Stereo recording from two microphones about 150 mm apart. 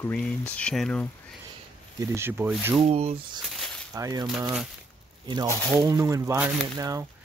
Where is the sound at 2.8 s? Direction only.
40° right (ahead or behind).